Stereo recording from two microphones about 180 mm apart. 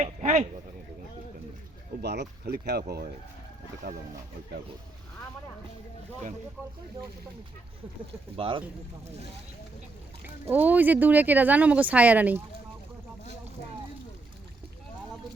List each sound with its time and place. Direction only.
0.0 s speech: 40° right (ahead or behind)
2.0 s speech: 65° right (ahead or behind)
8.4 s speech: 30° right (ahead or behind)
10.2 s speech: 10° right (ahead or behind)